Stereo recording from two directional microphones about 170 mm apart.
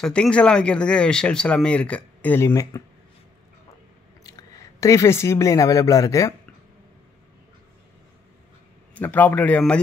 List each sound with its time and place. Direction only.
0.0 s speech: 5° left (ahead or behind)
4.2 s speech: 20° left (ahead or behind)
8.9 s speech: 10° left (ahead or behind)